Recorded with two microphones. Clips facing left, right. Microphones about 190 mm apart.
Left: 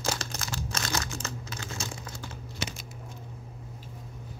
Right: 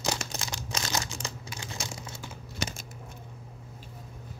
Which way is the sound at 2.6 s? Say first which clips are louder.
Right 2 dB; 45° right (ahead or behind).